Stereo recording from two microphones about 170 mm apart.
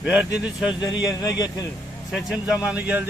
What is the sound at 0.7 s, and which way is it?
Speech, 25° left (ahead or behind).